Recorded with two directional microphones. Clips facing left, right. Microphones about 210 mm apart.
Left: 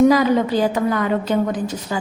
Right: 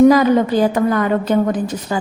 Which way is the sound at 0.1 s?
50° right (ahead or behind).